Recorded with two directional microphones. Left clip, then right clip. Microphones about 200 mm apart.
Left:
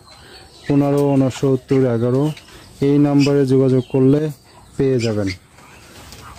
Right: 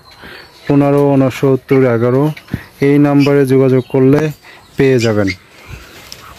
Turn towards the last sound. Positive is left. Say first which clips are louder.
# right 7 dB
turn(degrees=-20)  # may be behind; listen again after turning